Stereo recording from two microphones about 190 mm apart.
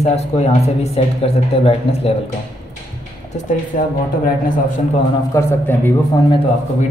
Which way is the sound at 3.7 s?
45° left (ahead or behind).